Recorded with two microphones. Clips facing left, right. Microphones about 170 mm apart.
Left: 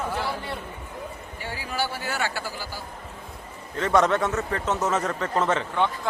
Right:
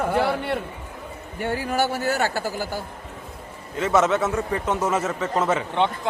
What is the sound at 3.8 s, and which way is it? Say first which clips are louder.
A man's voice: right 1 dB; 5° right (ahead or behind).